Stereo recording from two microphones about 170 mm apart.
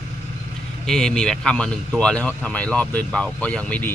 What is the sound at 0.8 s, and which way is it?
Speech, 5° left (ahead or behind).